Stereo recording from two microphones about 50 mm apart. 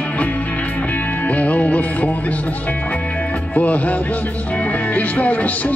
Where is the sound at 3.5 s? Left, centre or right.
Left.